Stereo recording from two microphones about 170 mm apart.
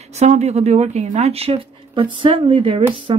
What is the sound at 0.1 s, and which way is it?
Speech, 40° right (ahead or behind).